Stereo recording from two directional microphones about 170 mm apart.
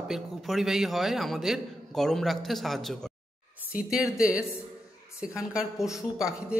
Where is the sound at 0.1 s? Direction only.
Centre (ahead or behind).